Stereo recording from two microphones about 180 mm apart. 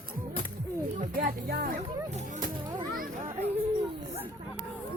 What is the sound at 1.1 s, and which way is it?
Speech, 55° right (ahead or behind).